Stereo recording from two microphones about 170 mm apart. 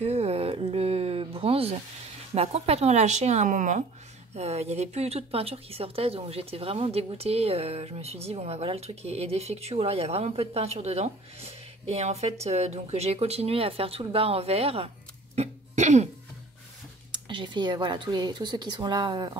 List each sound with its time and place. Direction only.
0.0 s a sound: 40° right (ahead or behind)
2.3 s a woman's voice: 35° right (ahead or behind)
15.3 s cough: 40° right (ahead or behind)
17.1 s speech: 25° right (ahead or behind)